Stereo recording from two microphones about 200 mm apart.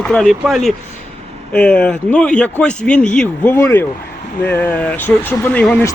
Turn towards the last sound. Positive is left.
turn(degrees=10)  # may be behind; listen again after turning